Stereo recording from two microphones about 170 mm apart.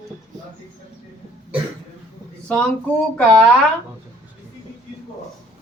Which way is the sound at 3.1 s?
5° left (ahead or behind).